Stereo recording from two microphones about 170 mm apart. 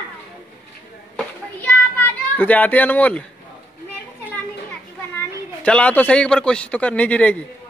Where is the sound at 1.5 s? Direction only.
10° left (ahead or behind).